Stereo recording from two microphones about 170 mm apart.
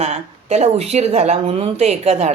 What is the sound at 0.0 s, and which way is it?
Speech, 40° right (ahead or behind).